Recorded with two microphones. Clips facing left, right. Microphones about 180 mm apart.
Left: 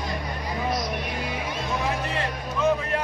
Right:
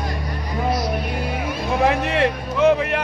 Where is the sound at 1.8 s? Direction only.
70° right (ahead or behind).